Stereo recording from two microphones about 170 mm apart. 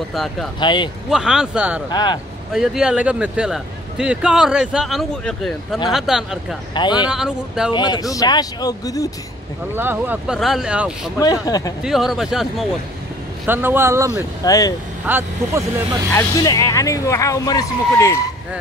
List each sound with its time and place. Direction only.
0.1 s speech: centre (ahead or behind)
0.6 s speech: 25° left (ahead or behind)
1.1 s speech: 5° right (ahead or behind)
1.9 s speech: 25° left (ahead or behind)
2.5 s speech: centre (ahead or behind)
6.7 s speech: 25° left (ahead or behind)
7.1 s speech: 5° right (ahead or behind)
7.7 s speech: 25° left (ahead or behind)
9.8 s speech: 10° right (ahead or behind)
11.4 s speech: 20° left (ahead or behind)
11.8 s speech: centre (ahead or behind); by 14.2 s 15° right (ahead or behind)
14.4 s speech: 20° left (ahead or behind)
15.0 s speech: 15° right (ahead or behind)
16.1 s speech: 20° left (ahead or behind)